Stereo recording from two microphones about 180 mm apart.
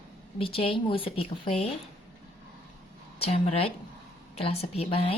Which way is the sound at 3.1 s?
35° left (ahead or behind).